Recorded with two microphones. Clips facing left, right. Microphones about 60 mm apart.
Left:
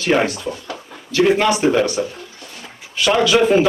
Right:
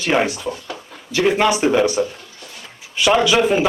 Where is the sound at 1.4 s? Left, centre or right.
Centre.